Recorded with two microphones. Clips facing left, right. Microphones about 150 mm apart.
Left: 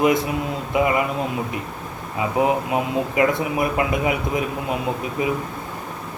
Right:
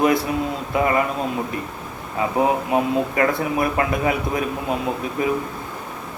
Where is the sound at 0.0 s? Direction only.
20° left (ahead or behind).